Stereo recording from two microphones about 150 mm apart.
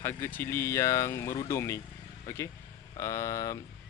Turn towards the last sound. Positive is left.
turn(degrees=20)  # may be behind; listen again after turning